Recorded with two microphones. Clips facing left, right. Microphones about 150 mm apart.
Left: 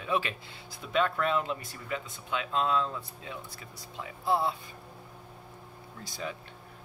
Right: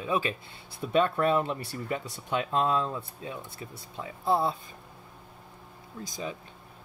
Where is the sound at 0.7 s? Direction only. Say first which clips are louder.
Right 4 dB; 40° right (ahead or behind).